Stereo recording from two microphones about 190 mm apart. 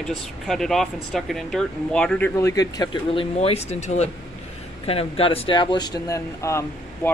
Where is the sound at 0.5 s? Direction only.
Centre (ahead or behind).